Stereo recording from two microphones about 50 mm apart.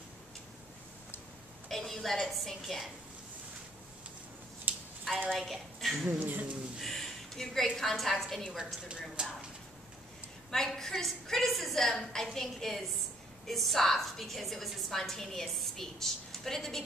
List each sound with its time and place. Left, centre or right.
1.7 s a woman's voice: centre
4.7 s a sound: right
5.3 s a woman's voice: centre
6.1 s speech: right
6.8 s a sound: centre
7.7 s a woman's voice: centre
8.8 s speech: centre
10.5 s a woman's voice: centre